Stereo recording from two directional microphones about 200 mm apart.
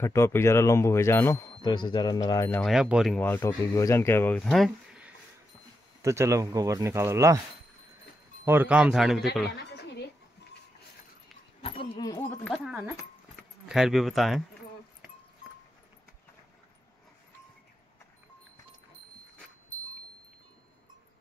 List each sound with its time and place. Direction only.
0.0 s speech: 15° left (ahead or behind)
2.6 s speech: centre (ahead or behind)
3.3 s speech: 10° left (ahead or behind); by 5.1 s 5° right (ahead or behind)
6.0 s speech: 15° right (ahead or behind)
8.5 s speech: 10° right (ahead or behind)
9.6 s a sound: 55° left (ahead or behind)
11.6 s a sound: 25° left (ahead or behind)
12.4 s speech: centre (ahead or behind)